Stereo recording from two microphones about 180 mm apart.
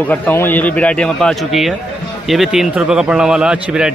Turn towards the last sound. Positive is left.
turn(degrees=-5)  # may be behind; listen again after turning